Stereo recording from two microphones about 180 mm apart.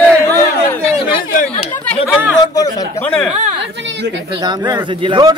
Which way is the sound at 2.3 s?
20° left (ahead or behind).